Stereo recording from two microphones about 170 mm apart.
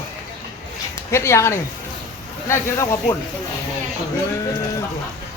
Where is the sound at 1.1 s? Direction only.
15° left (ahead or behind).